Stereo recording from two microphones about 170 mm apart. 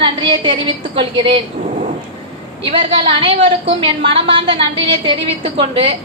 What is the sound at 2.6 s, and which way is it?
A woman's voice, 30° right (ahead or behind).